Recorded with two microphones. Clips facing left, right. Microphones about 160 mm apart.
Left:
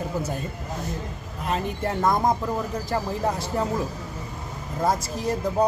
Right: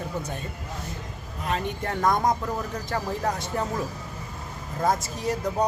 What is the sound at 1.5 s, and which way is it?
Speech, 5° left (ahead or behind).